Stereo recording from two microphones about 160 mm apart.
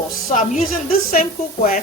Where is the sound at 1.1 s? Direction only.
60° left (ahead or behind).